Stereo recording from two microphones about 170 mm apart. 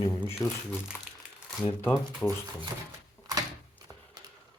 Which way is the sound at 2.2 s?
10° left (ahead or behind).